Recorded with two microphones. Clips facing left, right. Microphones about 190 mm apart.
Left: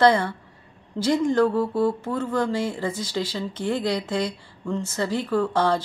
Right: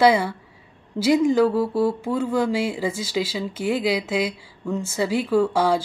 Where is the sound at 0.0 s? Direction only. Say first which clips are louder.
Right 1 dB; 10° right (ahead or behind).